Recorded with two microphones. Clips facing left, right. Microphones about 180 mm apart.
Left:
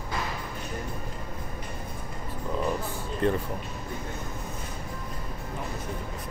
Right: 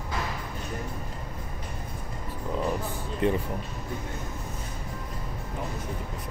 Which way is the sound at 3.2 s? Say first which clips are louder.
Even; 15° right (ahead or behind).